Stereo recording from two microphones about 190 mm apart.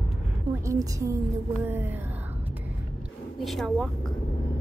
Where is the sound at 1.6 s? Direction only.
10° right (ahead or behind).